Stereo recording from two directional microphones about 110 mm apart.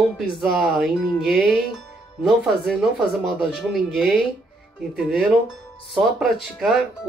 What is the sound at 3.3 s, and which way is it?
Speech, centre (ahead or behind).